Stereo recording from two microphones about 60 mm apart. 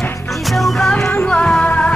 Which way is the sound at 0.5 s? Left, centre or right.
Centre.